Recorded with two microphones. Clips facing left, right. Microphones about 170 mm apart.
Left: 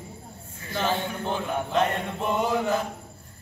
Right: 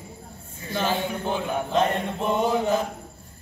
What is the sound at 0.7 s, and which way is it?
Chant, 10° right (ahead or behind).